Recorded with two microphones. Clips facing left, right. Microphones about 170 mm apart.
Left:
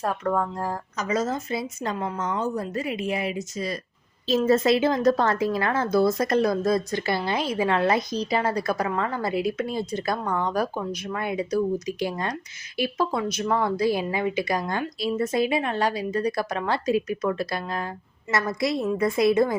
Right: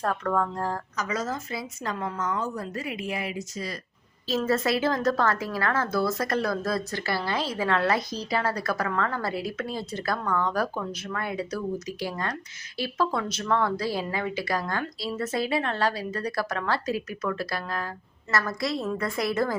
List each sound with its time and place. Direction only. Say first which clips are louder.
0.0 s speech: left 1 dB; 10° left (ahead or behind)
0.9 s a woman's voice: left 9 dB; 20° left (ahead or behind)